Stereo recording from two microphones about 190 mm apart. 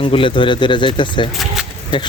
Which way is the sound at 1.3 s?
Centre (ahead or behind).